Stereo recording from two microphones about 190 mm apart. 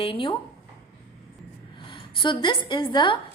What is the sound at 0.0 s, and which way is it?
Speech, 30° left (ahead or behind).